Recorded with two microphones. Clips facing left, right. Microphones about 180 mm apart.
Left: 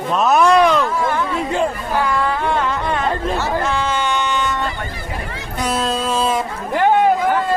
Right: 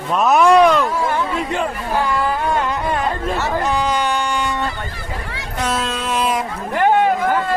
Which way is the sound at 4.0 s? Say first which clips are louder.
Even; 10° right (ahead or behind).